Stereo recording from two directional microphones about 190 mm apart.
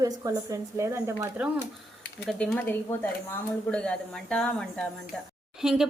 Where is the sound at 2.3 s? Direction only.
5° left (ahead or behind).